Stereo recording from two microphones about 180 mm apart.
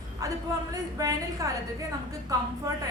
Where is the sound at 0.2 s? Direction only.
20° right (ahead or behind).